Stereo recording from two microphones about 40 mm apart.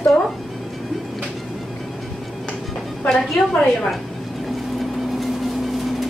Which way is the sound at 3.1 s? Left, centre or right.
Left.